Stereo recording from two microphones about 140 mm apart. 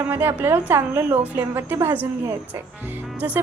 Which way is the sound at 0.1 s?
15° right (ahead or behind).